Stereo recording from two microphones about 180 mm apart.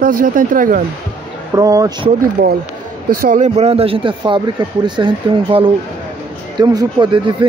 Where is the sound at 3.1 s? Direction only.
45° right (ahead or behind).